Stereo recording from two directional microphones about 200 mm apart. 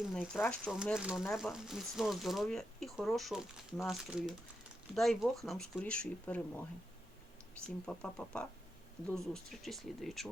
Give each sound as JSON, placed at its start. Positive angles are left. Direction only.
{"t": 0.0, "sound": "speech", "side_deg": 0}
{"t": 7.9, "sound": "speech", "side_deg": 5}